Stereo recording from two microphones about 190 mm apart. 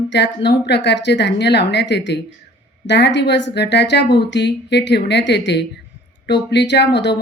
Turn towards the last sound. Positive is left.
turn(degrees=65)  # may be behind; listen again after turning